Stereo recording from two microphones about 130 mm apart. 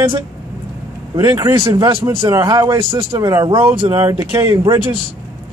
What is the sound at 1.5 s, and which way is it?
Speech, 35° right (ahead or behind).